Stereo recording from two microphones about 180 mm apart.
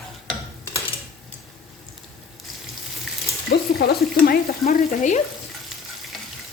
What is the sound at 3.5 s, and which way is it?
Stir, 60° left (ahead or behind).